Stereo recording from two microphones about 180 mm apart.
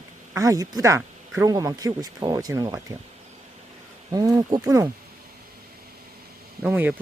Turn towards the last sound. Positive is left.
turn(degrees=-10)  # may be behind; listen again after turning